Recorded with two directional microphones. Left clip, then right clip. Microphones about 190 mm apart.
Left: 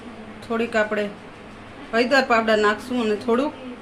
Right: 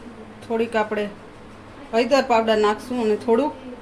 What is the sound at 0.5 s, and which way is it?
Speech, 30° right (ahead or behind).